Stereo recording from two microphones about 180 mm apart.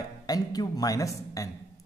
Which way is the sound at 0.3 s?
20° left (ahead or behind).